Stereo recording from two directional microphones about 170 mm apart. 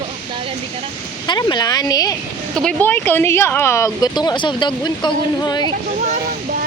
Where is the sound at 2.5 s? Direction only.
5° left (ahead or behind); by 5.7 s 25° left (ahead or behind).